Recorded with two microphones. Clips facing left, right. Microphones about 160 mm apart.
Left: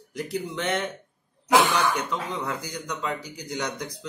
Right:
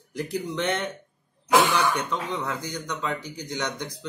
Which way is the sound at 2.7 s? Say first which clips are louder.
Right 1 dB; 5° left (ahead or behind).